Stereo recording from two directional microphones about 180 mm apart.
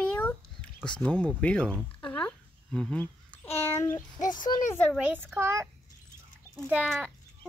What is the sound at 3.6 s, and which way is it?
Speech, 15° left (ahead or behind).